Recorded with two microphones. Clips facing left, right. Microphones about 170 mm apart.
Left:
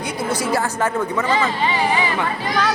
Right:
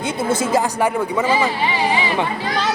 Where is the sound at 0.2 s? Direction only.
25° right (ahead or behind).